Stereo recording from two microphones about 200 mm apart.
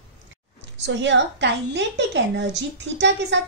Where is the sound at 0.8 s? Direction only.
60° right (ahead or behind).